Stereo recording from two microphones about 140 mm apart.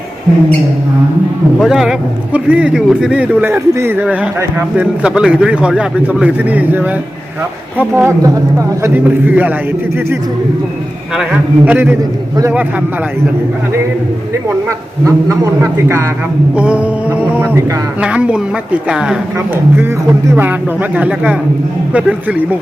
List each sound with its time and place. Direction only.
1.5 s speech: centre (ahead or behind)
11.1 s speech: 5° right (ahead or behind)
14.7 s a man's voice: 20° right (ahead or behind); by 19.2 s 5° right (ahead or behind)
20.3 s speech: 15° right (ahead or behind)